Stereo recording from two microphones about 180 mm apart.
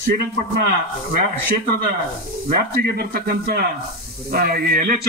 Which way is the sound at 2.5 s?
60° right (ahead or behind).